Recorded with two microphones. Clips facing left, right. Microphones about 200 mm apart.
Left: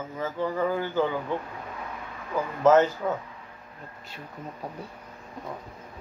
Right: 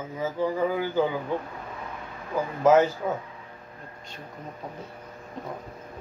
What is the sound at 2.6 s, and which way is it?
Speech, 10° right (ahead or behind).